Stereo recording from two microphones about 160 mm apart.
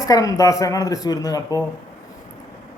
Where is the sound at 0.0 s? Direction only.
20° left (ahead or behind).